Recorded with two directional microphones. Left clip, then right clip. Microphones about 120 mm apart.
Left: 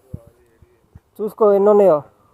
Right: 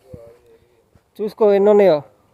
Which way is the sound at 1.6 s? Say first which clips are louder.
Even; 45° right (ahead or behind).